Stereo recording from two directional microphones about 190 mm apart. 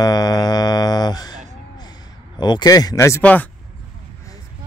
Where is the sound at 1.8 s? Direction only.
20° left (ahead or behind).